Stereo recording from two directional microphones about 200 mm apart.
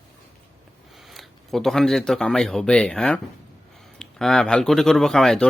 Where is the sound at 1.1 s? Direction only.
Centre (ahead or behind).